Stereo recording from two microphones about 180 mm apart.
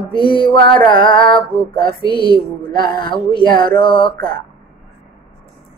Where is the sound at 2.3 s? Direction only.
25° left (ahead or behind).